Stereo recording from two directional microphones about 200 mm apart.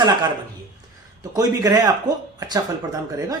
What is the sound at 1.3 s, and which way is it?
A man's voice, 15° right (ahead or behind).